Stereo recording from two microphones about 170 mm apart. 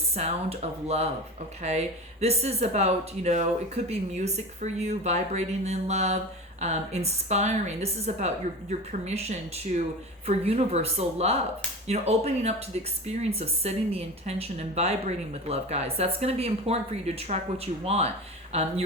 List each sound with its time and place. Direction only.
0.1 s speech: 40° right (ahead or behind)